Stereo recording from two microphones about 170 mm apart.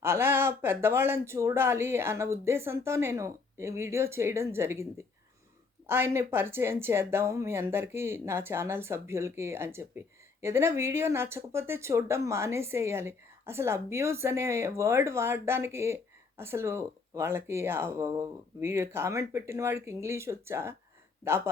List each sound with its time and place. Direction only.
0.0 s speech: 15° right (ahead or behind)
5.9 s speech: 15° right (ahead or behind)